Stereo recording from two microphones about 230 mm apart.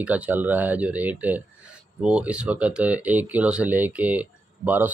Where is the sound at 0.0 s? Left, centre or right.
Centre.